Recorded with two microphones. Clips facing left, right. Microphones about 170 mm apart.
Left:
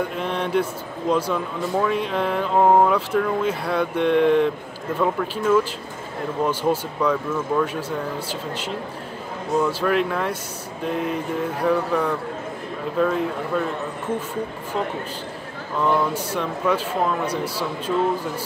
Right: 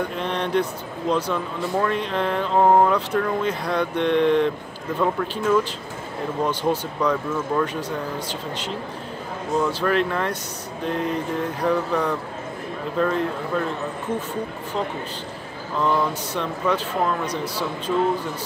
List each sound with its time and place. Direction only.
0.2 s speech: 5° left (ahead or behind)
15.8 s speech: 10° left (ahead or behind)